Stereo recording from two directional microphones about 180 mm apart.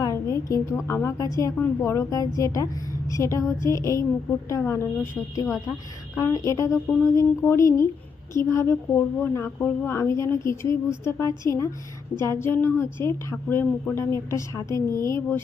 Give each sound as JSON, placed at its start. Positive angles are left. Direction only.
{"t": 0.0, "sound": "a woman's voice", "side_deg": 15}